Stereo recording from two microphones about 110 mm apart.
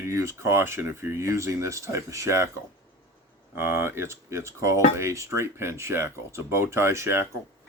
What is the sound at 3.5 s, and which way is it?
Speech, 20° right (ahead or behind).